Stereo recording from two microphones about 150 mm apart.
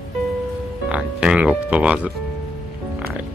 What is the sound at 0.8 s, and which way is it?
Speech, 5° right (ahead or behind).